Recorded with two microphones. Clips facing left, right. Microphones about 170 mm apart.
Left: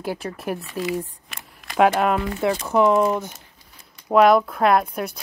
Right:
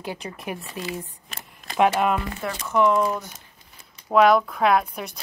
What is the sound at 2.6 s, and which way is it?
Speech, 35° left (ahead or behind).